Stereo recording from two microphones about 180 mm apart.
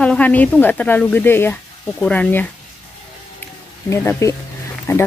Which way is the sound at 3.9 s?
15° left (ahead or behind).